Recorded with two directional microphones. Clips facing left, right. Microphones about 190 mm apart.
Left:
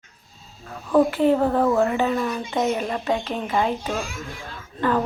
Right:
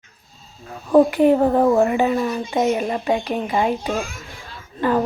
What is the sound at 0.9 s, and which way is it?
Speech, 15° right (ahead or behind).